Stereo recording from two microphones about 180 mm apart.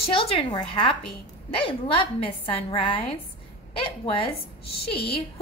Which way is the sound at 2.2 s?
30° left (ahead or behind).